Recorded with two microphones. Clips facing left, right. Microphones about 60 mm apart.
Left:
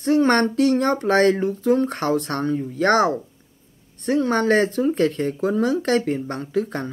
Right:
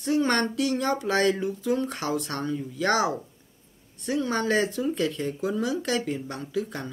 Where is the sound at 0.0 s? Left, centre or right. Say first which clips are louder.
Left 6 dB; left.